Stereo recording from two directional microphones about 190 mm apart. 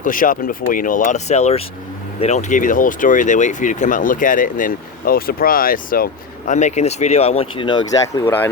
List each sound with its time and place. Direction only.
0.0 s speech: 45° left (ahead or behind); by 7.9 s 25° left (ahead or behind)
8.2 s speech: 10° left (ahead or behind)